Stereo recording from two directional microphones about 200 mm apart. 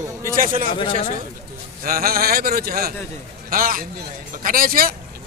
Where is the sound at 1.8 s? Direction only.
45° right (ahead or behind).